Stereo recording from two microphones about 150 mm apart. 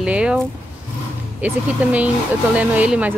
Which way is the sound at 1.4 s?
10° right (ahead or behind).